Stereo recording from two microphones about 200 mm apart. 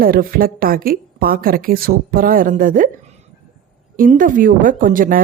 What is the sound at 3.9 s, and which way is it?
Speech, 45° right (ahead or behind).